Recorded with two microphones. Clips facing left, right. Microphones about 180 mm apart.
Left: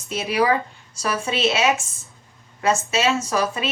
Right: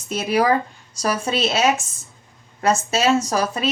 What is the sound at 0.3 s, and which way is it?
A woman's voice, 40° right (ahead or behind).